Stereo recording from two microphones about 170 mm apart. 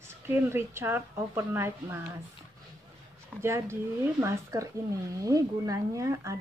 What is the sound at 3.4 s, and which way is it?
Speech, 15° right (ahead or behind).